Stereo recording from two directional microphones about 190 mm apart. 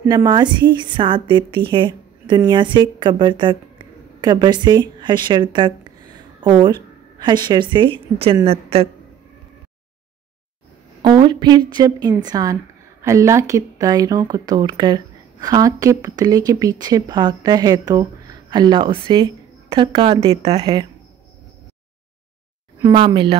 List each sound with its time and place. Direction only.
0.1 s a woman's voice: 20° right (ahead or behind)
11.0 s speech: 25° right (ahead or behind)
22.8 s speech: 20° right (ahead or behind)